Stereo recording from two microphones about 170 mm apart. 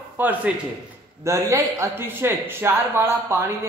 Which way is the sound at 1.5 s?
15° right (ahead or behind).